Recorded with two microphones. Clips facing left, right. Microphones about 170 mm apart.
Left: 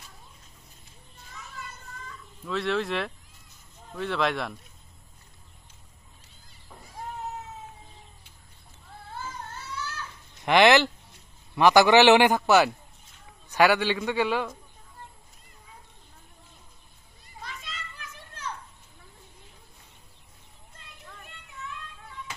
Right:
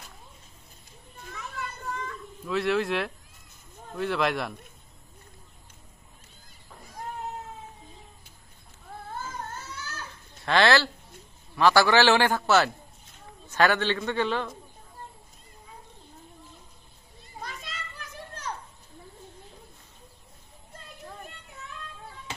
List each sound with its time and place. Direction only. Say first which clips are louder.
1.1 s children playing: right 5 dB; 70° right (ahead or behind)
2.4 s speech: right 2 dB; 5° right (ahead or behind)
9.1 s baby cry: right 1 dB; 45° right (ahead or behind)
10.4 s a man's voice: left 3 dB; 15° left (ahead or behind)
17.4 s children playing: right 2 dB; 40° right (ahead or behind)